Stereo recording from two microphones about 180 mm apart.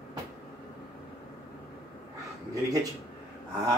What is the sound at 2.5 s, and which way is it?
Speech, 20° right (ahead or behind).